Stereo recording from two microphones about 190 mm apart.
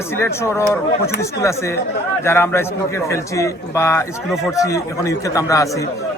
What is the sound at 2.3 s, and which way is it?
A man's voice, 15° left (ahead or behind).